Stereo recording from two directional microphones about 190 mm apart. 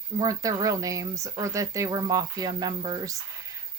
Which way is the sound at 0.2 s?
20° right (ahead or behind).